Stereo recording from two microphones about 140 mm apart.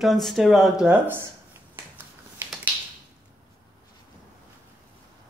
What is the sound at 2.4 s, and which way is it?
Finger snapping, 15° right (ahead or behind).